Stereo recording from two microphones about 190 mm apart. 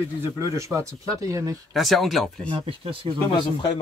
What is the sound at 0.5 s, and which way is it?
Speech, 15° right (ahead or behind).